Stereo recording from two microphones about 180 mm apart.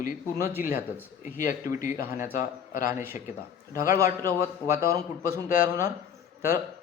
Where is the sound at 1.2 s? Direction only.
45° left (ahead or behind).